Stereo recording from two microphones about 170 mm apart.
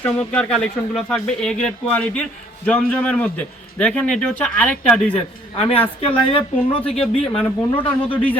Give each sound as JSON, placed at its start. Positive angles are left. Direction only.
{"t": 0.0, "sound": "a man's voice", "side_deg": 10}
{"t": 6.0, "sound": "speech", "side_deg": 30}
{"t": 7.8, "sound": "a man's voice", "side_deg": 10}